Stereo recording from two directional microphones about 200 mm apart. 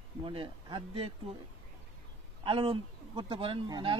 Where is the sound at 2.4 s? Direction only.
25° right (ahead or behind).